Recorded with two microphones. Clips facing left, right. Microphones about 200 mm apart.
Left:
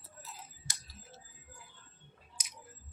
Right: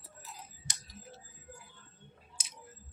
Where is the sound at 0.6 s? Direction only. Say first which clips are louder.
Right 3 dB; 15° right (ahead or behind).